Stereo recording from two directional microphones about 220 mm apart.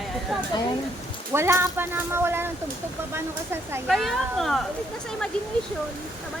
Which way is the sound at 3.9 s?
Centre (ahead or behind).